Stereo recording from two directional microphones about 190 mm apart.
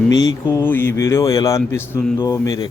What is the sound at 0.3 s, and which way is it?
A man's voice, 15° left (ahead or behind).